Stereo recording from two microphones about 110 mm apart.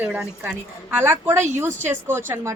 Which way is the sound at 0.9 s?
20° right (ahead or behind).